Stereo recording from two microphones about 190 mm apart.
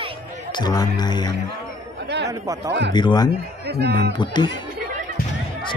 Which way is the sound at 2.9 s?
20° left (ahead or behind).